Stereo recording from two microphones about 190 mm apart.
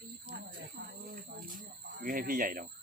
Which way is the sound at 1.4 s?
45° right (ahead or behind).